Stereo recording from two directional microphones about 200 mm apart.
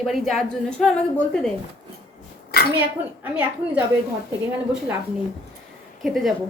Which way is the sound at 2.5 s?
50° left (ahead or behind).